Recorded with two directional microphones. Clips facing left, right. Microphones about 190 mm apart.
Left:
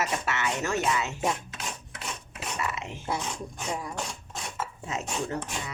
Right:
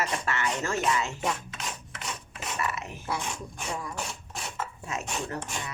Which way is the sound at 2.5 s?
25° left (ahead or behind).